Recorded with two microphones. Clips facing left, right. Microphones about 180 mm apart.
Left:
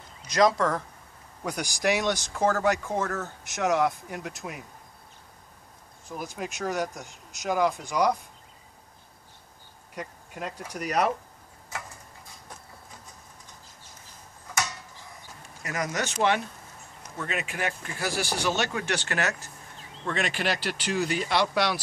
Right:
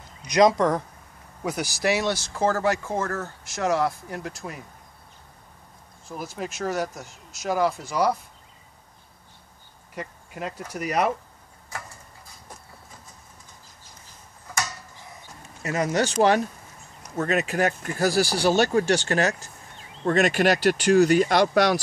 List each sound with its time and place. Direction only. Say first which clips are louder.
0.3 s speech: right 4 dB; 20° right (ahead or behind)
1.4 s speech: right 2 dB; 5° right (ahead or behind)
6.0 s speech: right 2 dB; centre (ahead or behind)
9.9 s speech: right 2 dB; centre (ahead or behind)
15.6 s speech: right 7 dB; 30° right (ahead or behind)
20.1 s speech: right 9 dB; 45° right (ahead or behind)